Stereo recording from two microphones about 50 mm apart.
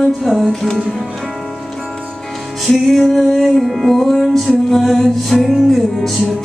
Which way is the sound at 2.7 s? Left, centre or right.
Centre.